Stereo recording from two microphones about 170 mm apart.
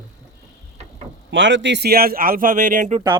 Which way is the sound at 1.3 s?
90° right.